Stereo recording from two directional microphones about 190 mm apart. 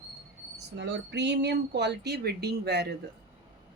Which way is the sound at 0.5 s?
65° right (ahead or behind).